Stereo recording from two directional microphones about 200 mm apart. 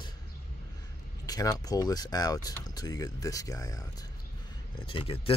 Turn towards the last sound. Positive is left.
turn(degrees=25)  # may be behind; listen again after turning